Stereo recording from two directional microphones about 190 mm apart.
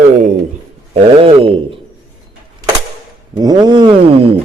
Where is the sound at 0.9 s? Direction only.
30° right (ahead or behind).